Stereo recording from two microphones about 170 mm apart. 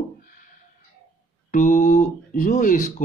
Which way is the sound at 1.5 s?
45° left (ahead or behind).